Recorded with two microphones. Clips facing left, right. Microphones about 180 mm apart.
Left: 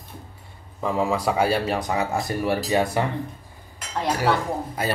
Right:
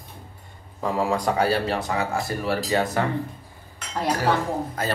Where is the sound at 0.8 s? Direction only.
Centre (ahead or behind).